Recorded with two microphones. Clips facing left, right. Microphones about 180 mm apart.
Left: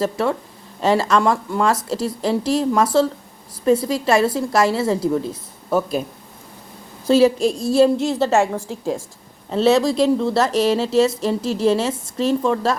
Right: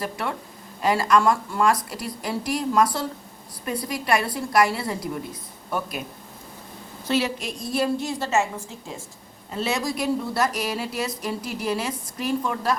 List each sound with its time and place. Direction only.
0.0 s a woman's voice: 25° left (ahead or behind)
7.1 s a woman's voice: 35° left (ahead or behind)
8.2 s a woman's voice: 90° left
9.6 s a woman's voice: 25° left (ahead or behind)